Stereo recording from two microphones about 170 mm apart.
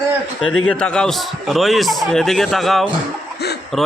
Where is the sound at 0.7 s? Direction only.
5° left (ahead or behind).